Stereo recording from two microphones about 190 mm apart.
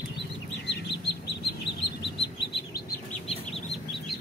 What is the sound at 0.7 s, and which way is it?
Bird, 65° left (ahead or behind).